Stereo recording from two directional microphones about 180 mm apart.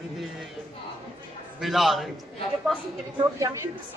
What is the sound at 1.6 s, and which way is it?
Speech, centre (ahead or behind).